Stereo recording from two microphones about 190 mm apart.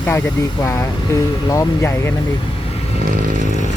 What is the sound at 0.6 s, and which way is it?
Speech, 15° left (ahead or behind).